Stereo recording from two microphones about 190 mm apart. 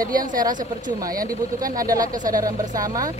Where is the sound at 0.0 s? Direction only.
45° right (ahead or behind).